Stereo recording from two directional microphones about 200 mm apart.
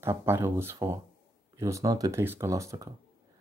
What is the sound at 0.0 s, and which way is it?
Speech, 10° right (ahead or behind).